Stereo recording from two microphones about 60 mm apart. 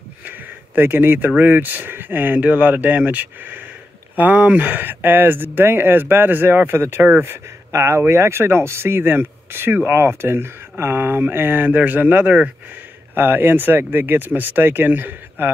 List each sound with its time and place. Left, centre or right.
0.2 s a sound: right
1.3 s speech: right
13.1 s speech: right